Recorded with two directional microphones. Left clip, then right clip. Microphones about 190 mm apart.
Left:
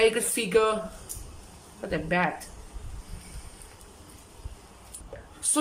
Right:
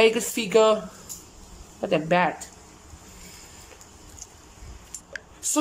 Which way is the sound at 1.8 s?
15° right (ahead or behind).